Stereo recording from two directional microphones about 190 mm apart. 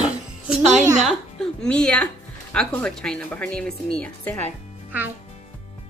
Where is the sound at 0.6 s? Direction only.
35° right (ahead or behind).